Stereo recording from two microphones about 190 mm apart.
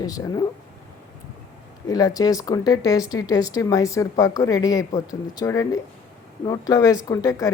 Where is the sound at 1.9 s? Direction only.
20° left (ahead or behind).